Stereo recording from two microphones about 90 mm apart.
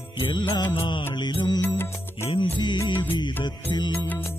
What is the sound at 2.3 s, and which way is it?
Music, 60° left (ahead or behind).